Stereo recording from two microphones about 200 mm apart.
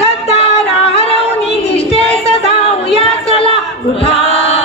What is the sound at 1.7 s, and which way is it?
Music, 30° left (ahead or behind).